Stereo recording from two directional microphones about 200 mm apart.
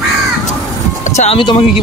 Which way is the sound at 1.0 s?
35° left (ahead or behind).